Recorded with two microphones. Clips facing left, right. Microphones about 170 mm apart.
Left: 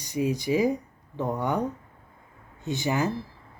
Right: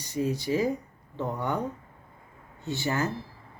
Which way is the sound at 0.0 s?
15° left (ahead or behind).